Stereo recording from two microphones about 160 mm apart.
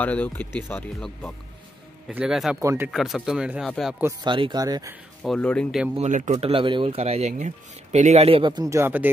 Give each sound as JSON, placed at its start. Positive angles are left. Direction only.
{"t": 0.0, "sound": "speech", "side_deg": 10}
{"t": 2.0, "sound": "speech", "side_deg": -5}
{"t": 2.6, "sound": "speech", "side_deg": -15}
{"t": 2.9, "sound": "speech", "side_deg": 0}
{"t": 4.2, "sound": "speech", "side_deg": -30}
{"t": 5.2, "sound": "speech", "side_deg": 5}
{"t": 5.9, "sound": "speech", "side_deg": -50}